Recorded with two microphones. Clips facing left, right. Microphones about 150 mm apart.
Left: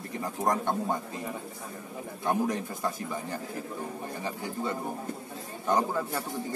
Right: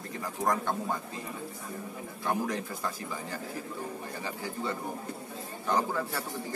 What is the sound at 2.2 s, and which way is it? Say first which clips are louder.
A man's voice: left 3 dB; 20° left (ahead or behind).